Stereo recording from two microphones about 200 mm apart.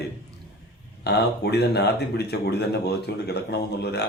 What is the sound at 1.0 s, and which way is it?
Speech, 55° left (ahead or behind).